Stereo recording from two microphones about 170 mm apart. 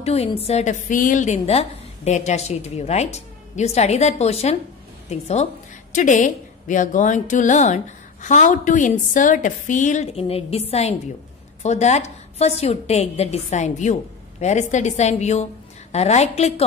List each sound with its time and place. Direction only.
0.0 s a woman's voice: 35° left (ahead or behind)